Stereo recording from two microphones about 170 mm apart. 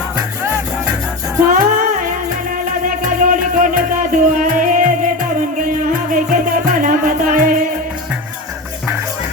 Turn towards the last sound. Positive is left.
turn(degrees=-55)  # may be behind; listen again after turning